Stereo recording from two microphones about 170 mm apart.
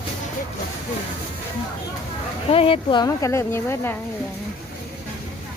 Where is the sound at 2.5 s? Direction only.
35° left (ahead or behind); by 3.9 s 15° left (ahead or behind).